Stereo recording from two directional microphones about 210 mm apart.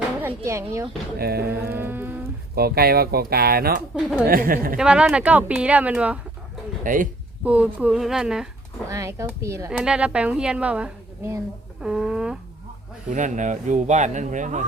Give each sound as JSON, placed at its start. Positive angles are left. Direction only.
{"t": 0.2, "sound": "speech", "side_deg": -10}
{"t": 1.2, "sound": "speech", "side_deg": -50}
{"t": 1.7, "sound": "cattle", "side_deg": -10}
{"t": 2.6, "sound": "speech", "side_deg": -45}
{"t": 4.8, "sound": "a woman's voice", "side_deg": -5}
{"t": 6.8, "sound": "speech", "side_deg": -40}
{"t": 7.4, "sound": "a woman's voice", "side_deg": -5}
{"t": 8.9, "sound": "a woman's voice", "side_deg": -15}
{"t": 13.1, "sound": "speech", "side_deg": -35}